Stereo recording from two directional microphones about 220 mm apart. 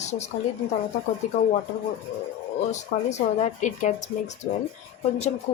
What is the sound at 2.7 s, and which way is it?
Speech, 30° left (ahead or behind).